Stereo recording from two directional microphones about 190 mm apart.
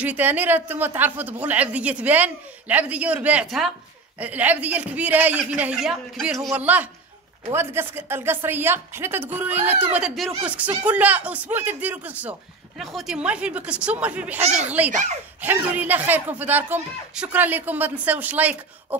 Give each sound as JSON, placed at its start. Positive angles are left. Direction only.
{"t": 0.0, "sound": "speech", "side_deg": -10}
{"t": 14.4, "sound": "speech", "side_deg": -35}
{"t": 15.4, "sound": "speech", "side_deg": -10}